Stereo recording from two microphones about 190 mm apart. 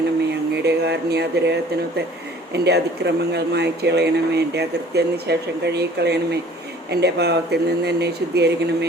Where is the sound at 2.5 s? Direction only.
60° right (ahead or behind).